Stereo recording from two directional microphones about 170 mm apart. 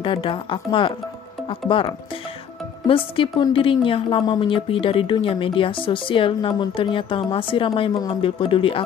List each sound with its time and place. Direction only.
0.0 s a woman's voice: 30° left (ahead or behind)